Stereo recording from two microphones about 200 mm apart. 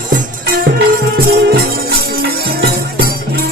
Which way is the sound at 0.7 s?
50° right (ahead or behind).